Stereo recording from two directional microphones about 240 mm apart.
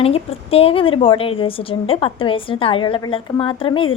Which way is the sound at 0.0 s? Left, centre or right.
Left.